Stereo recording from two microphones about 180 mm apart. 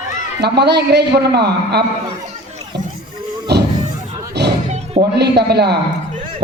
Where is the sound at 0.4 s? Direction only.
65° right (ahead or behind).